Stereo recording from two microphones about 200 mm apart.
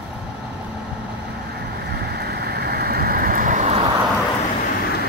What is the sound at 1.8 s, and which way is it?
Vehicle, 55° right (ahead or behind).